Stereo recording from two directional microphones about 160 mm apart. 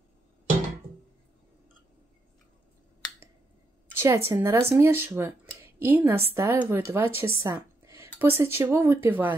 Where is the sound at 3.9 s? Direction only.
15° right (ahead or behind).